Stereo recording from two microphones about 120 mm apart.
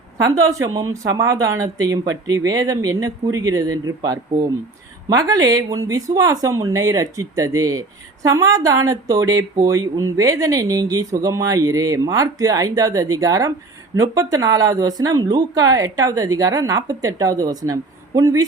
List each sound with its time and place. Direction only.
0.6 s speech: 30° right (ahead or behind)